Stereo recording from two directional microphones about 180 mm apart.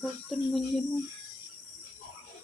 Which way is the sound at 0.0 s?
Centre (ahead or behind).